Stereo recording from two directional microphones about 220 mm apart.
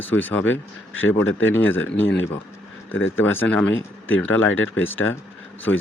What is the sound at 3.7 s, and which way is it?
Speech, 65° left (ahead or behind).